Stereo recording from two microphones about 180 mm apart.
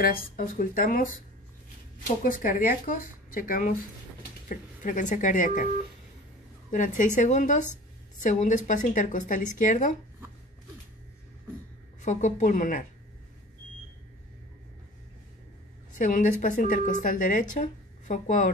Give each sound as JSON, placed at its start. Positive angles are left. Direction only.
{"t": 0.4, "sound": "a woman's voice", "side_deg": 50}
{"t": 2.2, "sound": "a woman's voice", "side_deg": 50}
{"t": 6.7, "sound": "a woman's voice", "side_deg": 45}
{"t": 12.0, "sound": "a woman's voice", "side_deg": 40}
{"t": 16.0, "sound": "a woman's voice", "side_deg": 45}